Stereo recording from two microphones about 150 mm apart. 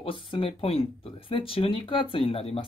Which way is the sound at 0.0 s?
35° left (ahead or behind).